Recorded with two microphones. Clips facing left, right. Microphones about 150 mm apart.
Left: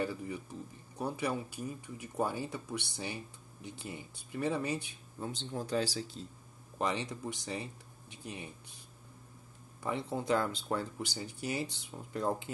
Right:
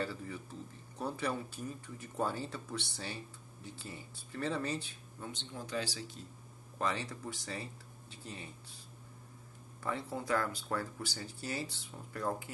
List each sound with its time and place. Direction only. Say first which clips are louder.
0.0 s speech: left 3 dB; 15° left (ahead or behind)
5.2 s speech: left 6 dB; 35° left (ahead or behind)
6.8 s speech: left 2 dB; 20° left (ahead or behind)
9.8 s speech: left 3 dB; 20° left (ahead or behind)